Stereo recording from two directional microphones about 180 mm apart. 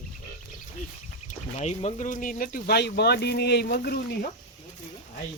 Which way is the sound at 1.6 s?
40° left (ahead or behind).